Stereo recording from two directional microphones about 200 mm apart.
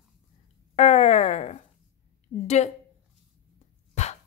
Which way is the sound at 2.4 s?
35° left (ahead or behind).